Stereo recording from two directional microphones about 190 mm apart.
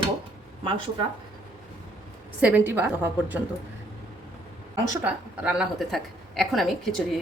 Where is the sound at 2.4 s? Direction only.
10° right (ahead or behind).